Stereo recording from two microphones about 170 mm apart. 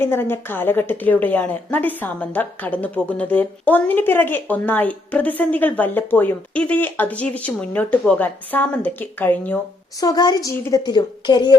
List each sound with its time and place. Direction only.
0.0 s a woman's voice: 15° left (ahead or behind)
10.0 s a woman's voice: 25° left (ahead or behind)